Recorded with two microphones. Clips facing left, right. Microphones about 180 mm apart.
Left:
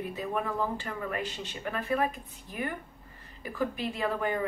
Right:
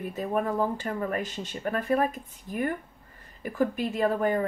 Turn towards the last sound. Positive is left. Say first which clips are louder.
# right 5 dB
turn(degrees=-45)  # may be behind; listen again after turning